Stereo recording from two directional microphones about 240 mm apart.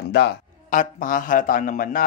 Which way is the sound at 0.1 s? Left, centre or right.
Left.